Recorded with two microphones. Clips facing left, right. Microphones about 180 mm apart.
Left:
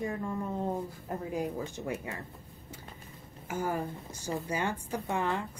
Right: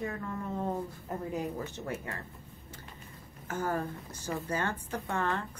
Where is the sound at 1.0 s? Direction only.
5° left (ahead or behind).